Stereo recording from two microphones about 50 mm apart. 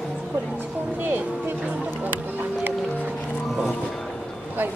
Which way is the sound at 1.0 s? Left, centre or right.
Right.